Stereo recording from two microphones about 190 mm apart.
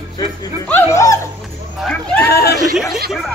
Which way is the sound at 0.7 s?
15° left (ahead or behind).